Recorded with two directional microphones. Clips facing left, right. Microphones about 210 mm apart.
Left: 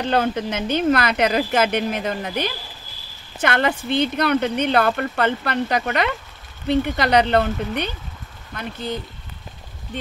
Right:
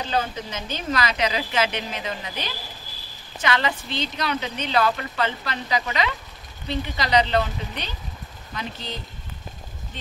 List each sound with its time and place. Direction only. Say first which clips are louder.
0.0 s speech: left 6 dB; 60° left (ahead or behind)